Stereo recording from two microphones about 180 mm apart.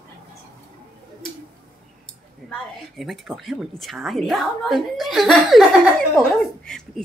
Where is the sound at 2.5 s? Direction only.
Centre (ahead or behind).